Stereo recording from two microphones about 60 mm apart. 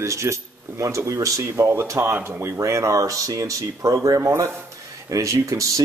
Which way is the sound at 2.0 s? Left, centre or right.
Right.